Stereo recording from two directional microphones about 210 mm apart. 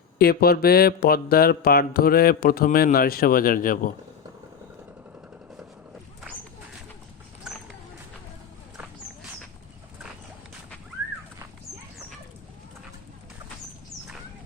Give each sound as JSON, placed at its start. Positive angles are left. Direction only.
{"t": 0.2, "sound": "mantra", "side_deg": 50}